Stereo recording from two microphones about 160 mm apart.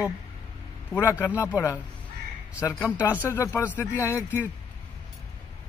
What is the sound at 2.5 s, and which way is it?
Speech, 15° left (ahead or behind).